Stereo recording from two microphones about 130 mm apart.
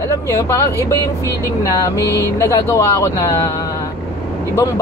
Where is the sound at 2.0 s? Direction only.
25° right (ahead or behind).